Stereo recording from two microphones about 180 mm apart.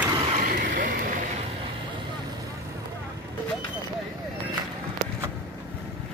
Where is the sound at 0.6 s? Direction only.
50° right (ahead or behind).